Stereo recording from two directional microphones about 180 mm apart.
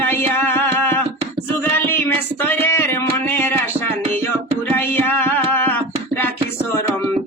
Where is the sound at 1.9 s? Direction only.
10° left (ahead or behind).